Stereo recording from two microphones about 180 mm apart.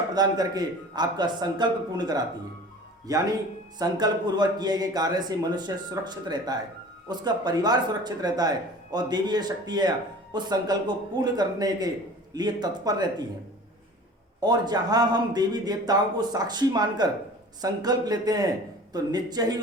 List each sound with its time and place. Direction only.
0.1 s speech: 20° right (ahead or behind)
14.4 s speech: 20° right (ahead or behind)